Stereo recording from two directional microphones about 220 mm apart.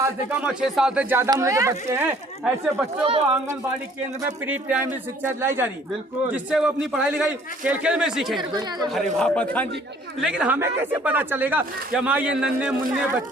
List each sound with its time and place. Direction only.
0.0 s speech: 5° right (ahead or behind)
3.0 s speech: 25° right (ahead or behind)
4.2 s a man's voice: 5° right (ahead or behind)
8.4 s speech: 20° right (ahead or behind)
9.1 s a man's voice: 5° left (ahead or behind)